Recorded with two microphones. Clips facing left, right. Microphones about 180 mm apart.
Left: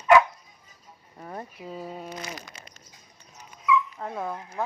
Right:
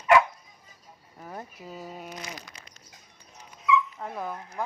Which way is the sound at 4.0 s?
Centre (ahead or behind).